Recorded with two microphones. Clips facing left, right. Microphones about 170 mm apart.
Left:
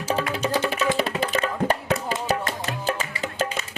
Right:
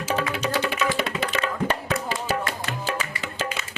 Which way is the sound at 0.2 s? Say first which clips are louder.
Left 1 dB; 35° left (ahead or behind).